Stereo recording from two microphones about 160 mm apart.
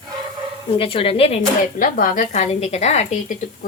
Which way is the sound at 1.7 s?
55° left (ahead or behind).